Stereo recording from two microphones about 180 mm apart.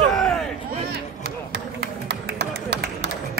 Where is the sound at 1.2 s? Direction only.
65° right (ahead or behind).